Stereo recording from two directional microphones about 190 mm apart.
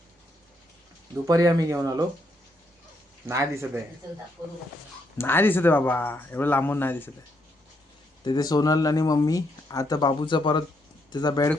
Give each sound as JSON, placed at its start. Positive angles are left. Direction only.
{"t": 1.3, "sound": "speech", "side_deg": -20}
{"t": 3.2, "sound": "speech", "side_deg": -15}
{"t": 5.1, "sound": "speech", "side_deg": 10}
{"t": 8.2, "sound": "speech", "side_deg": 20}